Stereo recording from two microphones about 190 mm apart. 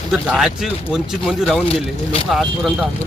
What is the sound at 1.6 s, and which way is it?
Speech, 30° left (ahead or behind).